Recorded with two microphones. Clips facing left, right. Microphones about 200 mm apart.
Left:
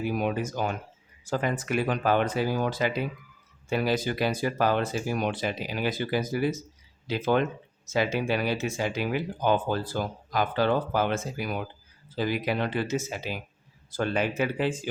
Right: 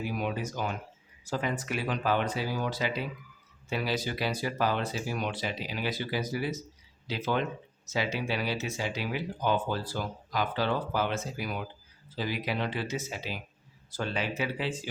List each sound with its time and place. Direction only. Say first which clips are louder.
0.1 s speech: left 5 dB; 50° left (ahead or behind)